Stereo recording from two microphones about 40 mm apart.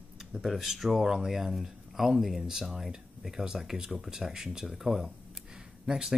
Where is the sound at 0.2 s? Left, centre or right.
Centre.